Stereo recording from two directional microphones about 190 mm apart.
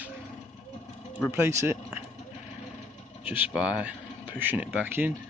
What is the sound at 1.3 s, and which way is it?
Speech, 15° right (ahead or behind).